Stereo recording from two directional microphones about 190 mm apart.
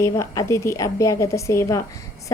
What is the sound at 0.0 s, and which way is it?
A woman's voice, 15° left (ahead or behind).